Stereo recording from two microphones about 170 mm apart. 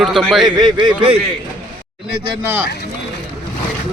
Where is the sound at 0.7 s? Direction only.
30° right (ahead or behind).